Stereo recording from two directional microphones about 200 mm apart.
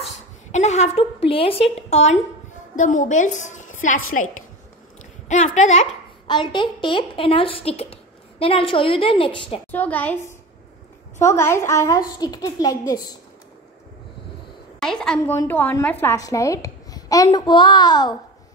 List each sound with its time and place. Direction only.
0.5 s a woman's voice: 35° left (ahead or behind)
6.2 s a woman's voice: 25° left (ahead or behind)
9.7 s a woman's voice: 10° left (ahead or behind)
14.8 s a woman's voice: 5° left (ahead or behind); by 18.1 s 20° left (ahead or behind)